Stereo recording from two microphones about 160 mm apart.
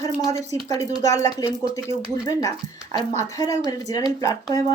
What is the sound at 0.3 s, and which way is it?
Speech, 45° right (ahead or behind).